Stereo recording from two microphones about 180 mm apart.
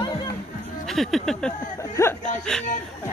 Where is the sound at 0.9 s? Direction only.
Centre (ahead or behind).